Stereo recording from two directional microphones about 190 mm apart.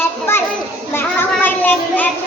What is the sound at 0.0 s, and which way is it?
Children playing, 10° left (ahead or behind).